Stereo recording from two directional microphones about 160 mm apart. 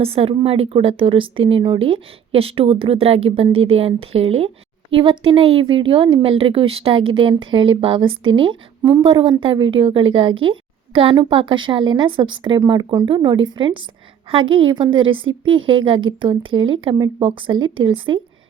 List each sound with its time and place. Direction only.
0.0 s speech: 35° right (ahead or behind)